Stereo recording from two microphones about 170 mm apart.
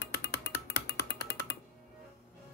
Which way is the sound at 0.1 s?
75° left (ahead or behind).